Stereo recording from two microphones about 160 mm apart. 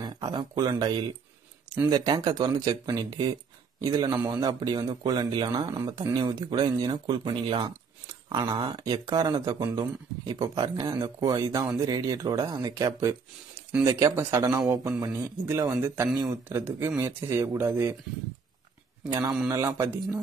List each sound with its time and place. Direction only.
0.0 s speech: 30° right (ahead or behind)
19.0 s speech: 25° right (ahead or behind)